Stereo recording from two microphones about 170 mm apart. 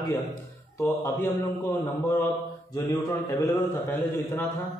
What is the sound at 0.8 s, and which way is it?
Speech, 15° left (ahead or behind).